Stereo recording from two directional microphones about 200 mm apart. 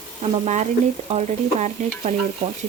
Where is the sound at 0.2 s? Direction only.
35° right (ahead or behind).